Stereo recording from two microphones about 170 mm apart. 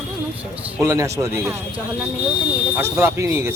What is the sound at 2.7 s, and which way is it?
Speech, 15° right (ahead or behind).